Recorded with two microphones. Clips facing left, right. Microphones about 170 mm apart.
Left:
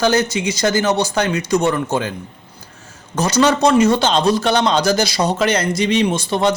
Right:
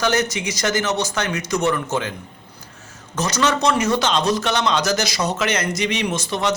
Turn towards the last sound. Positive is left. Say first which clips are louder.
# left 6 dB
turn(degrees=30)  # may be behind; listen again after turning